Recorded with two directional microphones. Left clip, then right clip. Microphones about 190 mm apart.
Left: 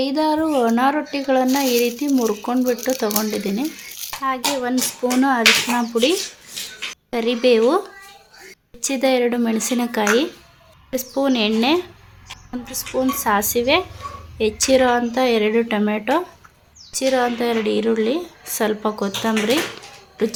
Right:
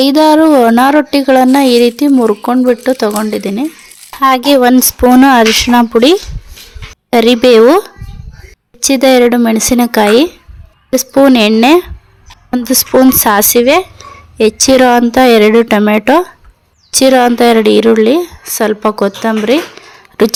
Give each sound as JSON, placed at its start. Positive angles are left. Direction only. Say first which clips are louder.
{"t": 0.0, "sound": "speech", "louder": "right 13 dB", "side_deg": -45}
{"t": 4.2, "sound": "speech", "louder": "right 15 dB", "side_deg": -50}